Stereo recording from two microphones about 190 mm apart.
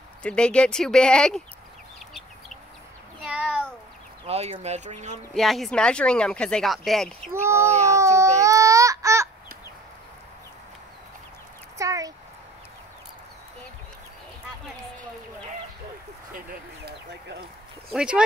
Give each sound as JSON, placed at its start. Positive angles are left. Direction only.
{"t": 0.2, "sound": "speech", "side_deg": 5}
{"t": 3.3, "sound": "a sound", "side_deg": -5}
{"t": 4.3, "sound": "speech", "side_deg": -35}
{"t": 5.3, "sound": "speech", "side_deg": 0}
{"t": 7.3, "sound": "speech", "side_deg": -15}
{"t": 7.6, "sound": "a sound", "side_deg": -35}
{"t": 8.4, "sound": "baby cry", "side_deg": -15}
{"t": 11.8, "sound": "dog", "side_deg": -15}
{"t": 17.9, "sound": "speech", "side_deg": -5}